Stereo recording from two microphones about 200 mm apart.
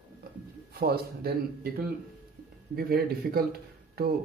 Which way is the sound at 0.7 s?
50° right (ahead or behind).